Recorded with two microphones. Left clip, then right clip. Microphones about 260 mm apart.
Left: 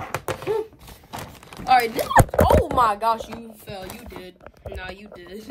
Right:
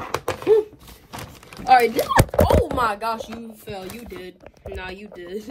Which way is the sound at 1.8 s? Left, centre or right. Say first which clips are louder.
Right 3 dB; left.